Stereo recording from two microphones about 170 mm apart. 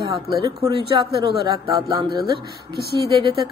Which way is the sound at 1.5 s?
20° right (ahead or behind).